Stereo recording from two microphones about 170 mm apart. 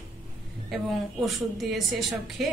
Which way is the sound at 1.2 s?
Centre (ahead or behind).